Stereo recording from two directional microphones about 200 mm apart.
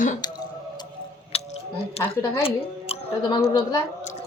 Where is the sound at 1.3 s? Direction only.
30° left (ahead or behind).